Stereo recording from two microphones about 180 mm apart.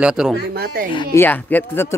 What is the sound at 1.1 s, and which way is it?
Speech, 10° left (ahead or behind).